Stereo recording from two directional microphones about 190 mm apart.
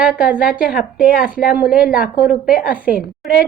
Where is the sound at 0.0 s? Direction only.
5° right (ahead or behind).